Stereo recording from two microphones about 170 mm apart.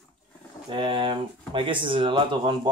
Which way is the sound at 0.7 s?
30° right (ahead or behind).